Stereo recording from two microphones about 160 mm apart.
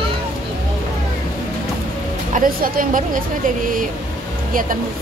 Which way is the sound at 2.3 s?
60° right (ahead or behind).